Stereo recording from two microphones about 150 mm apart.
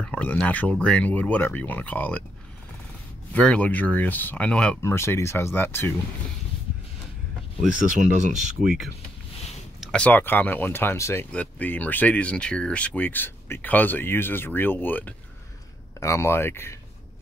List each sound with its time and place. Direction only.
0.0 s speech: 10° left (ahead or behind)
3.3 s speech: 10° left (ahead or behind)
7.6 s speech: 55° right (ahead or behind)
8.6 s speech: 5° right (ahead or behind); by 16.7 s 15° left (ahead or behind)